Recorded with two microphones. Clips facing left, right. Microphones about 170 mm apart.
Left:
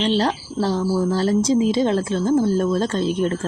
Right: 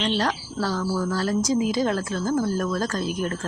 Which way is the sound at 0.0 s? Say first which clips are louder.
Left 5 dB; 30° left (ahead or behind).